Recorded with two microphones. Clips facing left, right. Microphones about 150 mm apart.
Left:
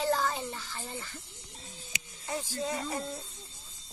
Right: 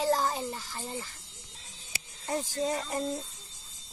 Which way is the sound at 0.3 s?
5° right (ahead or behind).